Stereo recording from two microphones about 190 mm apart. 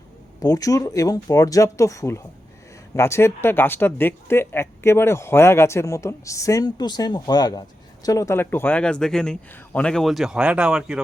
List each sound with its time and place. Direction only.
0.4 s speech: 20° left (ahead or behind); by 11.0 s 5° right (ahead or behind)